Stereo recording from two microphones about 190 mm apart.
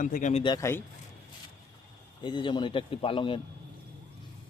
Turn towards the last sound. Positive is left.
turn(degrees=25)  # may be behind; listen again after turning